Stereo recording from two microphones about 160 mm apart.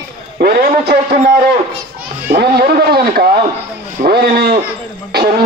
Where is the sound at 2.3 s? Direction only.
70° right (ahead or behind).